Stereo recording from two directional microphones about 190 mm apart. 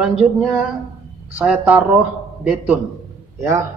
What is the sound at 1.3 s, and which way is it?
A woman's voice, 5° right (ahead or behind).